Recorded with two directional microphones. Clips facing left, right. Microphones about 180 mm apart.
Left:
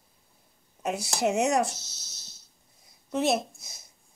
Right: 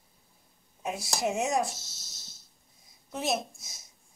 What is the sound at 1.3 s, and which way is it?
Speech, 70° left (ahead or behind).